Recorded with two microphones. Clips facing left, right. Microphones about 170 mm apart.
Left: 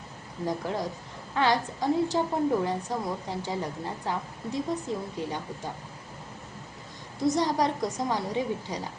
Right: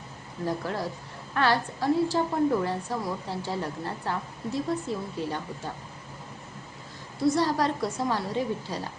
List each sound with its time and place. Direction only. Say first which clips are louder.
0.4 s a woman's voice: even; 15° left (ahead or behind)
7.2 s a woman's voice: right 1 dB; 20° left (ahead or behind)